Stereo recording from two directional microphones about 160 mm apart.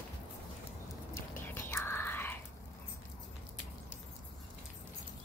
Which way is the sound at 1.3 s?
15° left (ahead or behind).